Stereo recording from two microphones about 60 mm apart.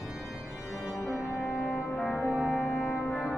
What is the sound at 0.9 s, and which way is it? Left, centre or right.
Music, right.